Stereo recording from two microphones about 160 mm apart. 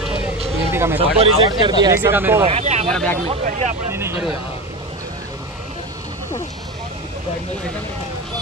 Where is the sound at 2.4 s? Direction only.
45° right (ahead or behind).